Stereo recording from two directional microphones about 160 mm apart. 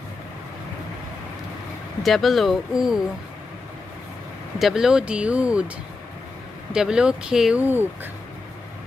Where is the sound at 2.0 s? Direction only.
Centre (ahead or behind).